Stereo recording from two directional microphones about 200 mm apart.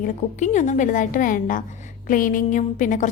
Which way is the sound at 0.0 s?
35° left (ahead or behind).